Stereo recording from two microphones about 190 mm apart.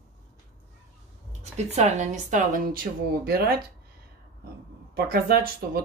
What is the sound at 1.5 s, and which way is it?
Speech, 35° right (ahead or behind).